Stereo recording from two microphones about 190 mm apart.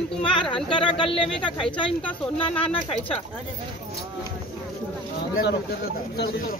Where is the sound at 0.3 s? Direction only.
25° left (ahead or behind).